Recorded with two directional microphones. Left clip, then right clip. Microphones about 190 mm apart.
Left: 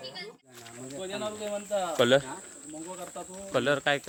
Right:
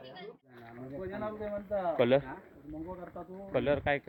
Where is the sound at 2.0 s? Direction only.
20° left (ahead or behind).